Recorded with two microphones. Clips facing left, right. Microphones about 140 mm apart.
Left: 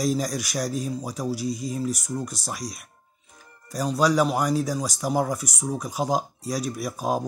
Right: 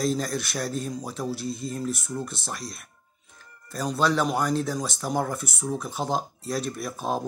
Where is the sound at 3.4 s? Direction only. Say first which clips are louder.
Left 3 dB; 10° left (ahead or behind).